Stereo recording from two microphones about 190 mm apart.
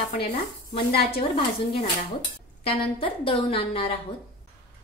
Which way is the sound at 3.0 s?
30° left (ahead or behind).